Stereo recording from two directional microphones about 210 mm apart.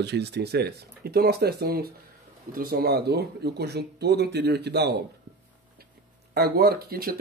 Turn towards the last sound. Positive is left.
turn(degrees=-45)  # may be behind; listen again after turning